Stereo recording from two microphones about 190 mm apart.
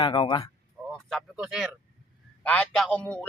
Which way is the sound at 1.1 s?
Centre (ahead or behind).